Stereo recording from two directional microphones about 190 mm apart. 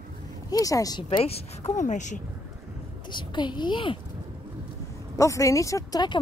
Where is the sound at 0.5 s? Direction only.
20° left (ahead or behind); by 2.2 s 40° left (ahead or behind).